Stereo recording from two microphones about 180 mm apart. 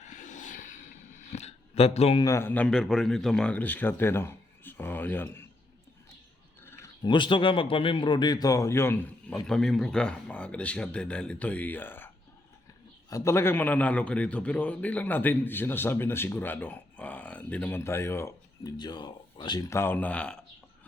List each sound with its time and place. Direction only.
0.0 s a sound: 45° left (ahead or behind)
2.2 s a man's voice: 15° left (ahead or behind)
6.7 s speech: 20° left (ahead or behind)
9.5 s a man's voice: centre (ahead or behind)